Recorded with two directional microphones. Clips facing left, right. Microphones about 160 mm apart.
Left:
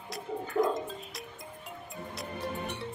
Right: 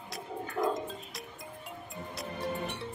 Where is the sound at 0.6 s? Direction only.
Centre (ahead or behind).